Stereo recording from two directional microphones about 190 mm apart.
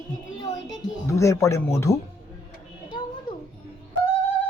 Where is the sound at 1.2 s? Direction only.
15° left (ahead or behind).